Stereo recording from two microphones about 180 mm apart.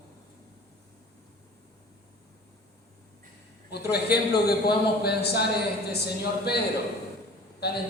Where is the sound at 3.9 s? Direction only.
60° left (ahead or behind).